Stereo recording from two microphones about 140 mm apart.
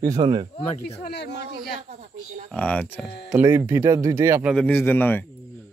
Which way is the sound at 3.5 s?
15° right (ahead or behind).